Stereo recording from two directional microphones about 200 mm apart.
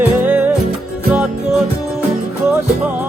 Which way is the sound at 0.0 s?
10° right (ahead or behind).